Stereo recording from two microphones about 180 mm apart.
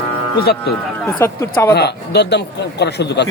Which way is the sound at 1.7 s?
65° left (ahead or behind).